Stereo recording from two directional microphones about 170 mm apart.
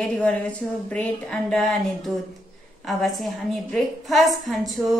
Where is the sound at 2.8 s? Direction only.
Centre (ahead or behind).